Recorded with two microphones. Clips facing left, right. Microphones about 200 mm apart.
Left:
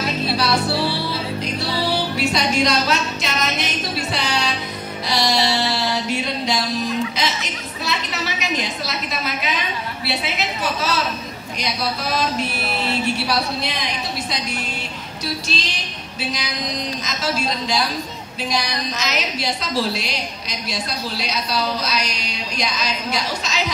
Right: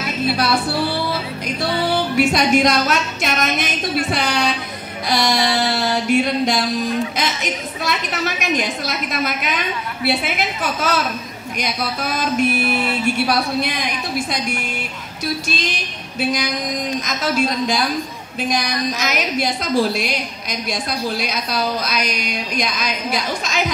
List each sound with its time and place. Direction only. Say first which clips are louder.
2.1 s a woman's voice: right 7 dB; 50° right (ahead or behind)